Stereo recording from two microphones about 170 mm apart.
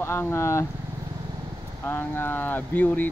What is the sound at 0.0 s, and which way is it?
Speech, 15° left (ahead or behind).